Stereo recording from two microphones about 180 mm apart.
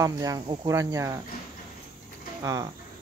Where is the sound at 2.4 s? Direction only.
20° right (ahead or behind).